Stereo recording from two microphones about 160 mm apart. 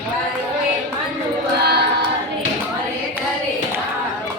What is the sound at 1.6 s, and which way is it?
Choir, 90° right.